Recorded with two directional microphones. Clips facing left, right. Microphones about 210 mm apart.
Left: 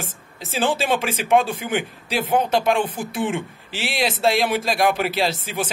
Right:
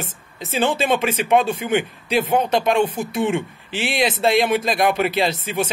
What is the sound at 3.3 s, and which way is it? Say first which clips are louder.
Speech: right 4 dB; 55° right (ahead or behind).